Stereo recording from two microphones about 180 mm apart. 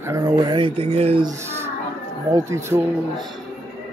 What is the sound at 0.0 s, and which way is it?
Speech, 20° right (ahead or behind).